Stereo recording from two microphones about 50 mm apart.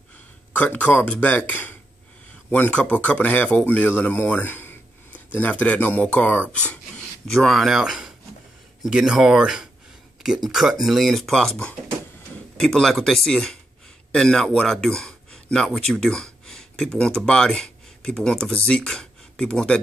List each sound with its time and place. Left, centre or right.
0.6 s speech: left
2.5 s speech: left
7.2 s speech: centre
7.6 s speech: centre